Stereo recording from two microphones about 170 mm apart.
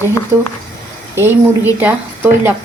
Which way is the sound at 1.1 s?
15° right (ahead or behind).